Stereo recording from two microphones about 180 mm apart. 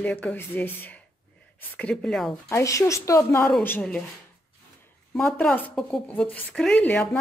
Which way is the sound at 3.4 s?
5° left (ahead or behind).